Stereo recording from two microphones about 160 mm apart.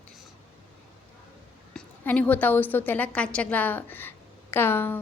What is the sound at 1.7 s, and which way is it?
A woman's voice, 5° left (ahead or behind).